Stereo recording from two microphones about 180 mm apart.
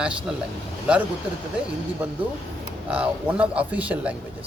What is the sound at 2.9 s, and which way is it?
A man's voice, 5° right (ahead or behind).